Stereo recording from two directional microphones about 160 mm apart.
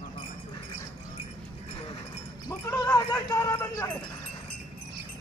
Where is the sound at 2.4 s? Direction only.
20° left (ahead or behind).